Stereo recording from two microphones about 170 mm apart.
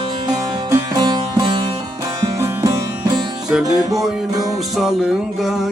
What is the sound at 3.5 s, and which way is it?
Music, centre (ahead or behind).